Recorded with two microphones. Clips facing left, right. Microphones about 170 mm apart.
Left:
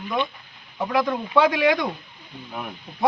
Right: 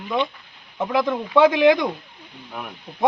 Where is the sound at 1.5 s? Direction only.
20° right (ahead or behind).